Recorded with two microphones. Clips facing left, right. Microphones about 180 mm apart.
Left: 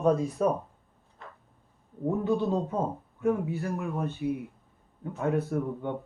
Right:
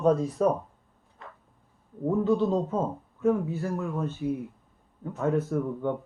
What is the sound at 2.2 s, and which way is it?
Speech, 15° left (ahead or behind).